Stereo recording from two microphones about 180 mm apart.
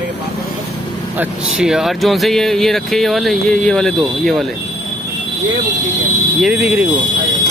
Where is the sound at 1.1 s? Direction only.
5° right (ahead or behind).